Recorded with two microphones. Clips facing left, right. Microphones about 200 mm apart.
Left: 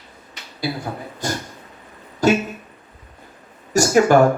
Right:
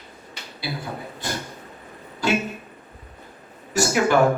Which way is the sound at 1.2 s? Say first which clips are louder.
Left 5 dB; 45° left (ahead or behind).